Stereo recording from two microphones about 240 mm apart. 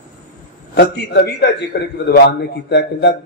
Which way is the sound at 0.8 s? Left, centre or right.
Left.